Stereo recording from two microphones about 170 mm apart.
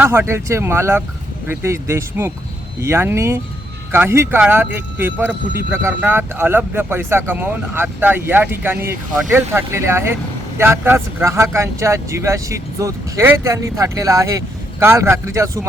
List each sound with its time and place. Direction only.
0.0 s speech: 15° right (ahead or behind)